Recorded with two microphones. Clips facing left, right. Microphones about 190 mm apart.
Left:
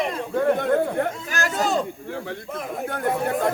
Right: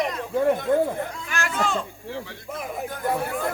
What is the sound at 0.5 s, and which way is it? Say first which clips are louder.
Speech: left 1 dB; 65° left (ahead or behind).